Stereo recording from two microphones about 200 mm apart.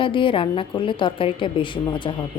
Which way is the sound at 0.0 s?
25° left (ahead or behind).